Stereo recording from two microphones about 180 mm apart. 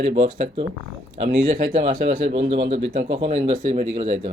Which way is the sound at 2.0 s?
60° right (ahead or behind).